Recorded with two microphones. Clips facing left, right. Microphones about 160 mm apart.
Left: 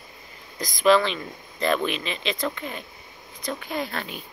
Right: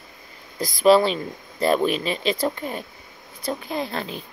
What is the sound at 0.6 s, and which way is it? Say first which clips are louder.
Speech: right 3 dB; 35° right (ahead or behind).